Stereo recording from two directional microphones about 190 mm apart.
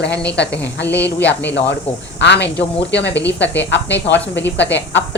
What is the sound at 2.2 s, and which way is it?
Speech, 65° left (ahead or behind).